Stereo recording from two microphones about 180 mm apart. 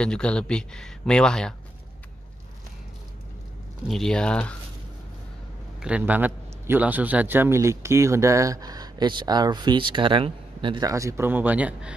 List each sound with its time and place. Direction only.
0.0 s speech: 5° left (ahead or behind)
3.8 s speech: centre (ahead or behind)
5.8 s a man's voice: 5° right (ahead or behind)